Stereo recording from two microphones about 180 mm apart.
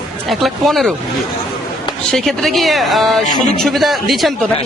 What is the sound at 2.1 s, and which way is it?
Speech, centre (ahead or behind).